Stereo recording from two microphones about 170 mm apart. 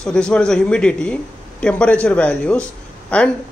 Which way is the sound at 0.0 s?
5° left (ahead or behind).